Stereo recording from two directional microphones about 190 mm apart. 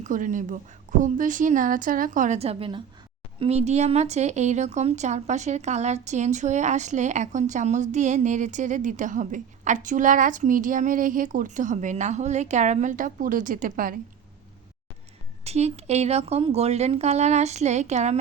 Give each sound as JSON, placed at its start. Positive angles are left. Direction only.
{"t": 0.0, "sound": "a woman's voice", "side_deg": -45}
{"t": 15.4, "sound": "speech", "side_deg": -35}